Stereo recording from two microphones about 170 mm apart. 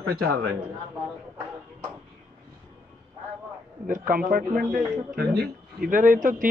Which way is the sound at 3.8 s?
55° right (ahead or behind).